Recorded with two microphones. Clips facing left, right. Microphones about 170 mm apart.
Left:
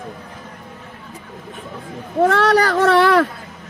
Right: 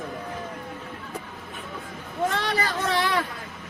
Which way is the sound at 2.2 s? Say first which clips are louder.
Left 11 dB; 75° left (ahead or behind).